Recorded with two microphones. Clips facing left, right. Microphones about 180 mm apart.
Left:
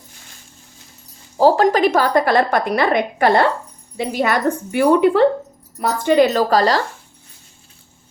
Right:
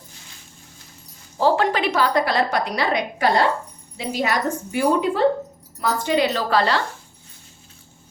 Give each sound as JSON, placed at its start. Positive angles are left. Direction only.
{"t": 1.4, "sound": "a woman's voice", "side_deg": 40}
{"t": 5.8, "sound": "a woman's voice", "side_deg": 50}